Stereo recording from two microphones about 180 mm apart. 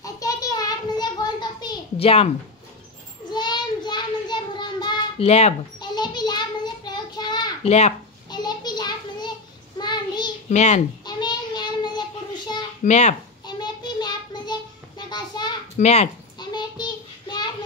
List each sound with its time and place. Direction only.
0.0 s a sound: 20° left (ahead or behind)
3.3 s child singing: 25° left (ahead or behind)
5.2 s speech: 35° left (ahead or behind)
5.8 s a sound: 25° left (ahead or behind)
7.6 s speech: 35° left (ahead or behind)
8.3 s a sound: 25° left (ahead or behind)
9.8 s child singing: 25° left (ahead or behind)
10.5 s speech: 40° left (ahead or behind)
11.1 s child singing: 25° left (ahead or behind)
12.8 s speech: 40° left (ahead or behind)
13.5 s child singing: 25° left (ahead or behind)
15.8 s speech: 35° left (ahead or behind)
16.3 s child singing: 25° left (ahead or behind)